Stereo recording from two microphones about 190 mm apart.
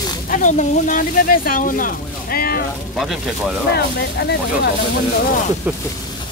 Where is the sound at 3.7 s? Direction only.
60° left (ahead or behind).